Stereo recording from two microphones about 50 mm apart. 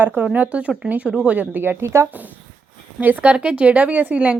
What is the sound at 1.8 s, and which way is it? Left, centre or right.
Speech, right.